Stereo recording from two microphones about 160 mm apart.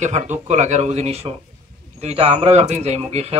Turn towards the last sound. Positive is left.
turn(degrees=-40)  # may be behind; listen again after turning